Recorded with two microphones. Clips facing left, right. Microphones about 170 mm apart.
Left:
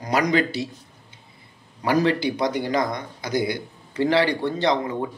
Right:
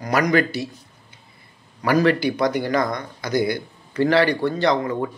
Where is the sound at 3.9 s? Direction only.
20° left (ahead or behind).